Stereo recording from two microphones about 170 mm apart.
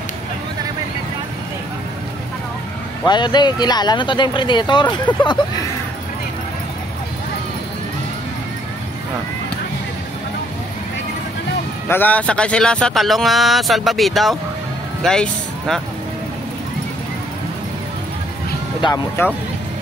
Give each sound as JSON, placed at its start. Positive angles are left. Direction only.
{"t": 3.1, "sound": "speech", "side_deg": 25}
{"t": 11.9, "sound": "speech", "side_deg": 10}